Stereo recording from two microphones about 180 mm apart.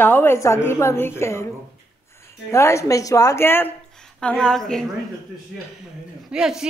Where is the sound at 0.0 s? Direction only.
10° left (ahead or behind).